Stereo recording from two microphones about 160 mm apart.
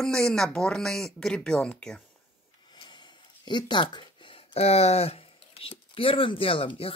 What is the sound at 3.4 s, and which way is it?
Speech, 30° left (ahead or behind).